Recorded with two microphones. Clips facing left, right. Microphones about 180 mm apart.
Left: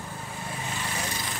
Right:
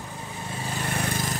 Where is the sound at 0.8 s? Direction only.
55° right (ahead or behind).